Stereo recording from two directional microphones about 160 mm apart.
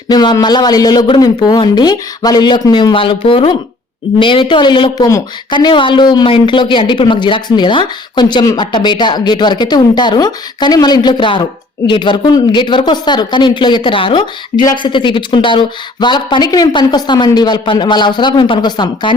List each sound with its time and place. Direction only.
0.1 s a woman's voice: 25° left (ahead or behind)